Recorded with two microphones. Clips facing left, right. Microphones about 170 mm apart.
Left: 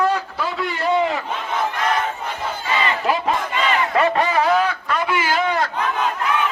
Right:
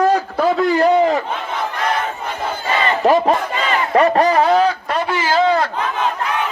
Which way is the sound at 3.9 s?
40° right (ahead or behind).